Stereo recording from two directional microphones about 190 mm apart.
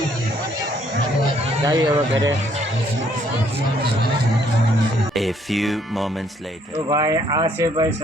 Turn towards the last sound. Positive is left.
turn(degrees=-20)  # may be behind; listen again after turning